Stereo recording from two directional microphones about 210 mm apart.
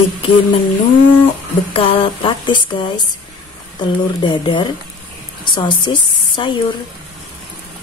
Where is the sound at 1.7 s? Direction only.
25° left (ahead or behind).